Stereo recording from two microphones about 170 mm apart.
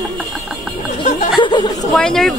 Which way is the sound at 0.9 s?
50° left (ahead or behind).